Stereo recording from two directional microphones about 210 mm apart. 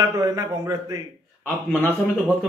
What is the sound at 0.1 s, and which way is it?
Speech, 15° right (ahead or behind).